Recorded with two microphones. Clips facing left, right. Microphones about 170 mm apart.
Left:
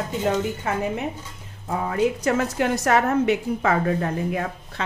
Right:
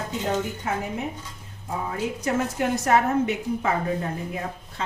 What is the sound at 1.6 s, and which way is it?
A woman's voice, 80° left.